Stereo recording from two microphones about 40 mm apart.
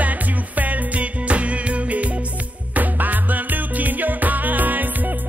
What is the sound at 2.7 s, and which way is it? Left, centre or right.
Music, right.